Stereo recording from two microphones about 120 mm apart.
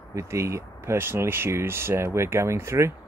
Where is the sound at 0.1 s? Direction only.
25° right (ahead or behind).